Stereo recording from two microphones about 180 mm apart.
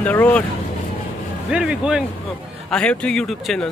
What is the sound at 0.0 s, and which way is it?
Speech, 10° left (ahead or behind).